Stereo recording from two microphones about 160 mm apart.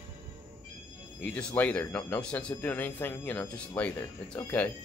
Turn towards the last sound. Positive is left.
turn(degrees=10)  # may be behind; listen again after turning